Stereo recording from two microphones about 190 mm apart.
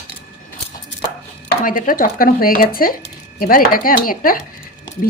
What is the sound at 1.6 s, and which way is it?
Speech, 45° left (ahead or behind).